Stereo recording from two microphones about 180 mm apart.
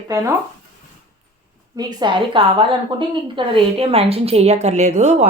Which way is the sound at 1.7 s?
20° right (ahead or behind).